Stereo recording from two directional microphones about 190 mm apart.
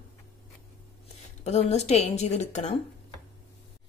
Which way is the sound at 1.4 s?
35° left (ahead or behind).